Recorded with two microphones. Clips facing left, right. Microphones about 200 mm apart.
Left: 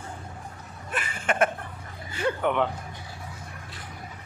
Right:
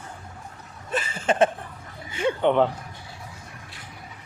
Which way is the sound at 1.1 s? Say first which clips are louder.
Right 4 dB; 25° right (ahead or behind).